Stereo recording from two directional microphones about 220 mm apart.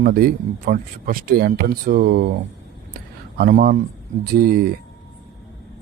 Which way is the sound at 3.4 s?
40° right (ahead or behind).